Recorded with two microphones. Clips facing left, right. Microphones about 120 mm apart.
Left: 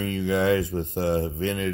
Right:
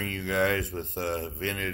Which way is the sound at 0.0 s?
5° left (ahead or behind).